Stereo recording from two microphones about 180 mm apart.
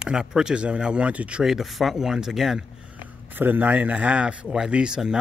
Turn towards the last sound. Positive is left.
turn(degrees=-5)  # may be behind; listen again after turning